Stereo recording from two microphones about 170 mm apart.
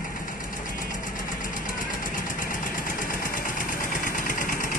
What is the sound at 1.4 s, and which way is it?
Engine, 50° left (ahead or behind).